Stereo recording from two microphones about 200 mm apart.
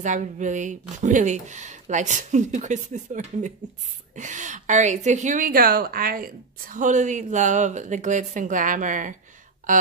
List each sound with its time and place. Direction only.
0.0 s a woman's voice: 40° right (ahead or behind)